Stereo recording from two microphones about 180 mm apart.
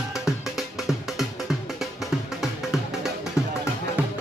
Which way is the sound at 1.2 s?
Centre (ahead or behind).